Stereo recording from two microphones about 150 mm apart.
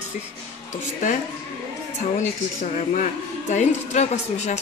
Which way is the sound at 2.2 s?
55° left (ahead or behind).